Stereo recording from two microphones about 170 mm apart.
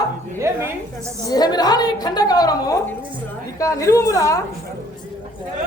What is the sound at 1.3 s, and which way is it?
A woman's voice, 25° left (ahead or behind).